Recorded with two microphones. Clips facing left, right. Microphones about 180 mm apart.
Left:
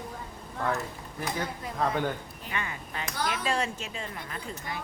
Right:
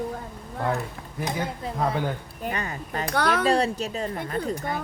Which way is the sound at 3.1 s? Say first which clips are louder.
Right 9 dB; 65° right (ahead or behind).